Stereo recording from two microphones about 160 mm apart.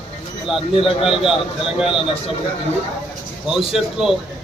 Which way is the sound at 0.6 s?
35° left (ahead or behind).